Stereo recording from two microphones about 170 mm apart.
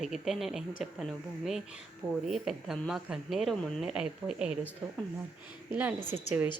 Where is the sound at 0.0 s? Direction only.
Centre (ahead or behind).